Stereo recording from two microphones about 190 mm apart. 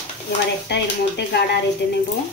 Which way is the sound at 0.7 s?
60° left (ahead or behind).